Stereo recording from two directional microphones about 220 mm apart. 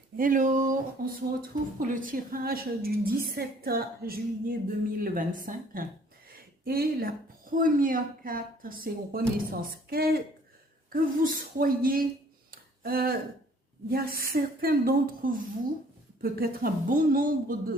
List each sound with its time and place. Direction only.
0.2 s a woman's voice: 35° right (ahead or behind)
12.5 s a sound: 40° right (ahead or behind)
13.9 s speech: 45° right (ahead or behind)